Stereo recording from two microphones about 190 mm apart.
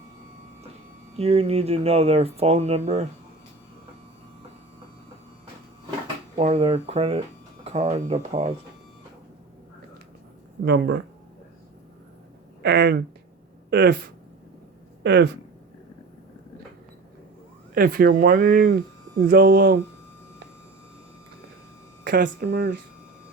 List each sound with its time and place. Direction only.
1.1 s speech: 30° right (ahead or behind)
6.3 s speech: 30° right (ahead or behind)
10.6 s speech: 70° right (ahead or behind)
12.6 s speech: 65° right (ahead or behind)
17.7 s speech: 50° right (ahead or behind)
22.0 s speech: 60° right (ahead or behind)